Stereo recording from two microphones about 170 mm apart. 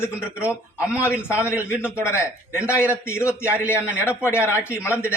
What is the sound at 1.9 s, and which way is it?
A man's voice, 15° left (ahead or behind).